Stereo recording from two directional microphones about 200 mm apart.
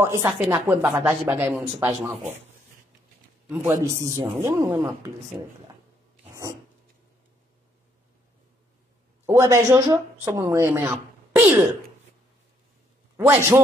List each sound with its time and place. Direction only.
0.0 s speech: 15° right (ahead or behind)
3.4 s a man's voice: 5° right (ahead or behind)
3.7 s speech: 15° right (ahead or behind)
9.2 s speech: 15° right (ahead or behind)
13.2 s speech: 10° right (ahead or behind)